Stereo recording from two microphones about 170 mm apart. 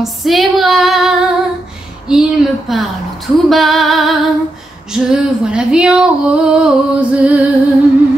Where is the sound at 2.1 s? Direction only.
Centre (ahead or behind).